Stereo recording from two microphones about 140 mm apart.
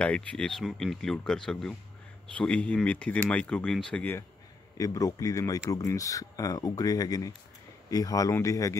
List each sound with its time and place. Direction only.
0.0 s speech: 10° left (ahead or behind)
4.7 s speech: 25° left (ahead or behind)